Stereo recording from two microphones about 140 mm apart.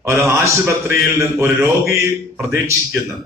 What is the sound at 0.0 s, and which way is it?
A man's voice, 20° right (ahead or behind).